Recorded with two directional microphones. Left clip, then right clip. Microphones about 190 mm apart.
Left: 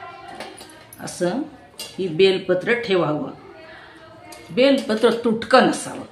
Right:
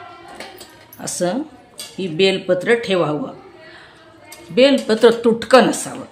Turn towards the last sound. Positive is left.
turn(degrees=-40)  # may be behind; listen again after turning